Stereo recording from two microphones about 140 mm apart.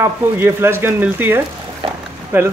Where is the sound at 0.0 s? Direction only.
15° right (ahead or behind).